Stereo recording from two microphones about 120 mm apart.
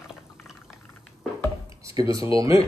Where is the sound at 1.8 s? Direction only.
30° right (ahead or behind).